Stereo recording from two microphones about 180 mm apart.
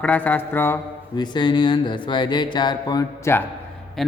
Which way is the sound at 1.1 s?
25° left (ahead or behind).